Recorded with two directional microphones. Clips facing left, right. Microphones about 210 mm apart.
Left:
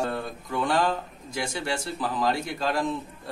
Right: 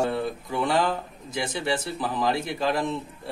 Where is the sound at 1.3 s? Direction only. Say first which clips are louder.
Right 3 dB; 20° right (ahead or behind).